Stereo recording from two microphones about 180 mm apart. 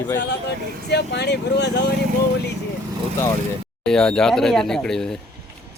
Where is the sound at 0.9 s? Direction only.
65° left (ahead or behind).